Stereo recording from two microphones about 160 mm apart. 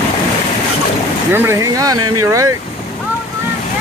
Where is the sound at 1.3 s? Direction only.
15° right (ahead or behind).